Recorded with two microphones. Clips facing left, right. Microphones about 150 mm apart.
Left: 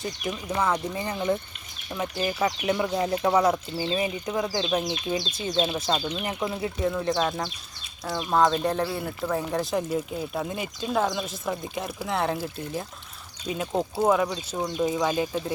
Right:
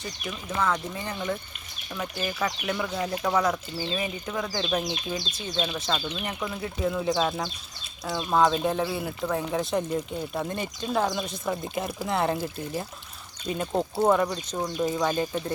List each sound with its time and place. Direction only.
0.3 s speech: 20° left (ahead or behind)
5.5 s speech: 25° left (ahead or behind)
6.1 s speech: 10° left (ahead or behind)
6.4 s speech: 25° left (ahead or behind)
6.8 s speech: 5° right (ahead or behind)